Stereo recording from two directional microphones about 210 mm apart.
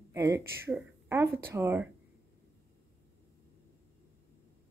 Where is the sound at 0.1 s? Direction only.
15° right (ahead or behind).